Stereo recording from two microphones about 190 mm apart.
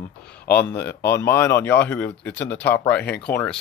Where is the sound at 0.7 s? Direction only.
10° left (ahead or behind).